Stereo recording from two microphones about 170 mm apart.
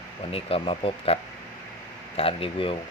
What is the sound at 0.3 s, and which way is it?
Speech, 35° left (ahead or behind).